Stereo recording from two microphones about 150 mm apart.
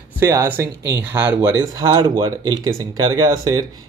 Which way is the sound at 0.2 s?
20° right (ahead or behind).